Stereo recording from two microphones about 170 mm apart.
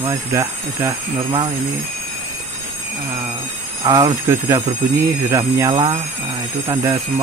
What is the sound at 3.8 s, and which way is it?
Speech, 20° right (ahead or behind).